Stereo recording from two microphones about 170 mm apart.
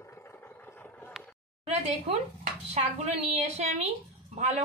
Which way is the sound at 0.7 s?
10° left (ahead or behind).